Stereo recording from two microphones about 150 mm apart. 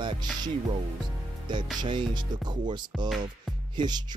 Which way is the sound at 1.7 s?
30° right (ahead or behind).